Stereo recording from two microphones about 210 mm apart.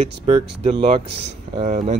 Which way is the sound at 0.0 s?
30° right (ahead or behind).